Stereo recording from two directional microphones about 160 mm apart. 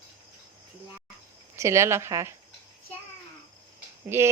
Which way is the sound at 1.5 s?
15° right (ahead or behind).